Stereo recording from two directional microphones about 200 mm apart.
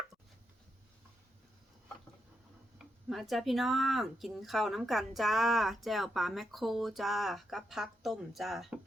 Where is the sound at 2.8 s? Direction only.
Centre (ahead or behind).